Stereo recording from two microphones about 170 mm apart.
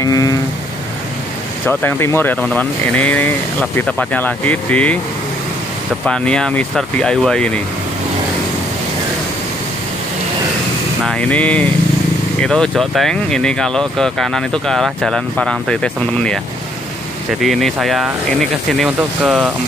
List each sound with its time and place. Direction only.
0.0 s vehicle: 20° left (ahead or behind)
1.7 s speech: 10° left (ahead or behind)
6.0 s speech: 5° left (ahead or behind)
11.1 s speech: 10° left (ahead or behind)
17.4 s speech: centre (ahead or behind)